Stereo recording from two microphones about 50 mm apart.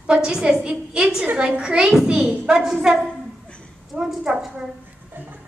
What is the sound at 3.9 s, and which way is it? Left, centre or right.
Speech, centre.